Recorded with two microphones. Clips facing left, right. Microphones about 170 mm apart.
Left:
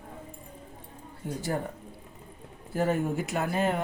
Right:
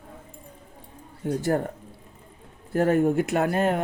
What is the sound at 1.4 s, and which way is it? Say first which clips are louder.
Speech: right 6 dB; 55° right (ahead or behind).